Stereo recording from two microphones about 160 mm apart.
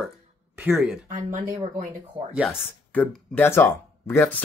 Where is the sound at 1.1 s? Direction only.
50° right (ahead or behind).